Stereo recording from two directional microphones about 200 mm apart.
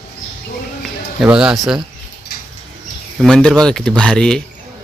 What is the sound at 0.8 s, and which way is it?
Speech, 5° right (ahead or behind).